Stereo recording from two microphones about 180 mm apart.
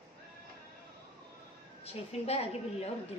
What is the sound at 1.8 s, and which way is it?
A woman's voice, 35° left (ahead or behind).